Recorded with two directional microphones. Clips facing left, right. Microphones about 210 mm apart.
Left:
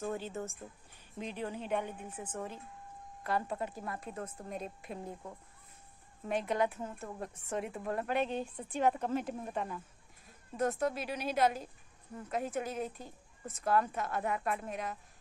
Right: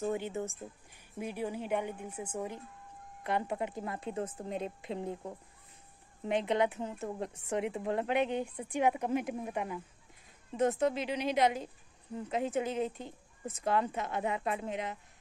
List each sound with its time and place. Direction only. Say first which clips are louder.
0.0 s a woman's voice: right 4 dB; 15° right (ahead or behind)